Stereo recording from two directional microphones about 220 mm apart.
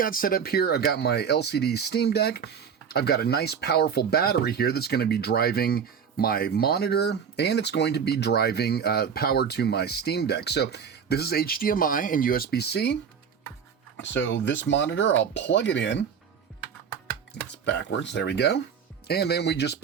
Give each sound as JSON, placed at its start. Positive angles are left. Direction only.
{"t": 0.0, "sound": "speech", "side_deg": 40}
{"t": 17.5, "sound": "speech", "side_deg": 50}